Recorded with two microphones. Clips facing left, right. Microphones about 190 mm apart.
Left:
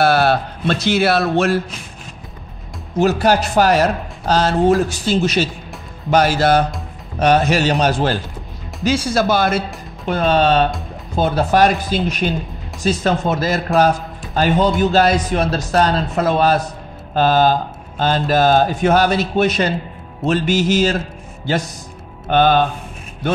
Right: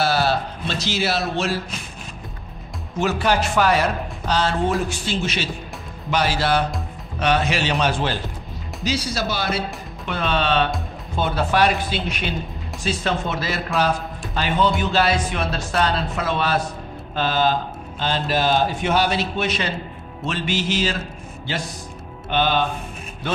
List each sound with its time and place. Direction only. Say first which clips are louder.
0.0 s speech: left 6 dB; 60° left (ahead or behind)
3.0 s a man's voice: left 6 dB; 40° left (ahead or behind)